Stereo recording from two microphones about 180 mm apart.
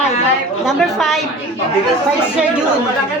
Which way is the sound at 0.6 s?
Centre (ahead or behind).